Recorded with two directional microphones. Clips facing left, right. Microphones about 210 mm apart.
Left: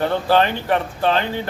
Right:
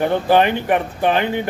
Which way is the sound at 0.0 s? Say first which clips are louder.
Right 2 dB; 15° right (ahead or behind).